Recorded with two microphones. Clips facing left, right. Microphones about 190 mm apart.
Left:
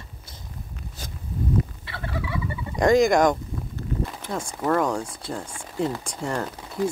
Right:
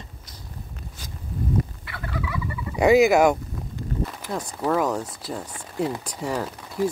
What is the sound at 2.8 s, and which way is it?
Speech, 10° right (ahead or behind).